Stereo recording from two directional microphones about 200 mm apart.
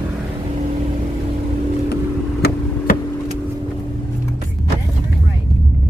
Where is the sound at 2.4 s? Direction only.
55° left (ahead or behind).